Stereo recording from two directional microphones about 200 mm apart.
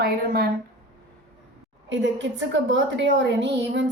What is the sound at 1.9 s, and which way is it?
A woman's voice, 65° right (ahead or behind).